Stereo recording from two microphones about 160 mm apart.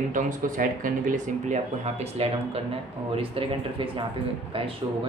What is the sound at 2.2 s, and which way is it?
Speech, 40° right (ahead or behind).